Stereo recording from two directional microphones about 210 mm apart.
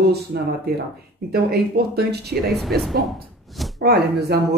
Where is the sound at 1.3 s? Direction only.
50° right (ahead or behind).